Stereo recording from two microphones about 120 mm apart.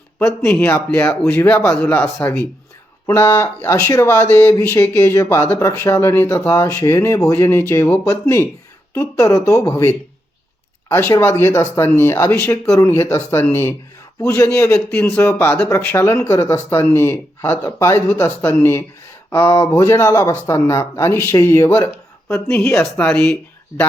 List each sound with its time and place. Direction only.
0.3 s speech: 10° left (ahead or behind)
1.6 s speech: 10° left (ahead or behind)
3.1 s speech: 25° left (ahead or behind)
11.1 s speech: 25° left (ahead or behind)
22.4 s speech: 10° left (ahead or behind)